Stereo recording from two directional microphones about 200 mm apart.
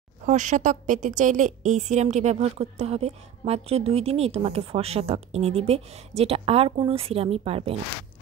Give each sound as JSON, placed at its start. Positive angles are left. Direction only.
{"t": 0.2, "sound": "a woman's voice", "side_deg": -35}